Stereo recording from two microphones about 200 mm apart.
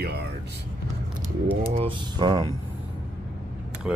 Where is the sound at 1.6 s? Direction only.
25° right (ahead or behind).